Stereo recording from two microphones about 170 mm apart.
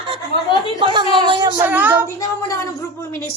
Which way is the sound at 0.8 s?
25° right (ahead or behind).